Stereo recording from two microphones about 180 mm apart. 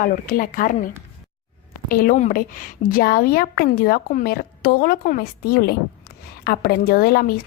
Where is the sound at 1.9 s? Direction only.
50° left (ahead or behind).